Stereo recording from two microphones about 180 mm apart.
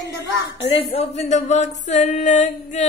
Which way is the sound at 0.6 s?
35° left (ahead or behind).